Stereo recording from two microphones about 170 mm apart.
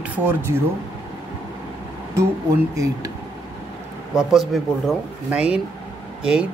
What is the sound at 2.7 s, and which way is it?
Speech, 20° right (ahead or behind).